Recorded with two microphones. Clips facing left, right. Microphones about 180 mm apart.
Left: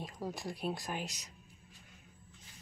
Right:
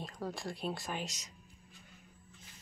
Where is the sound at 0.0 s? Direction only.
15° left (ahead or behind).